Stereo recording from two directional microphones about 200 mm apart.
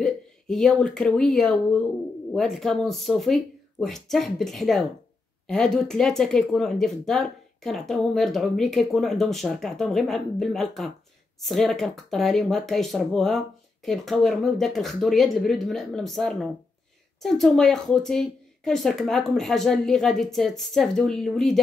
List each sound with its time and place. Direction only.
0.0 s speech: centre (ahead or behind)